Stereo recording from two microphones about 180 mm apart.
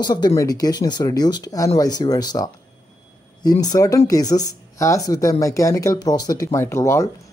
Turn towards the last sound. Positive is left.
turn(degrees=15)  # may be behind; listen again after turning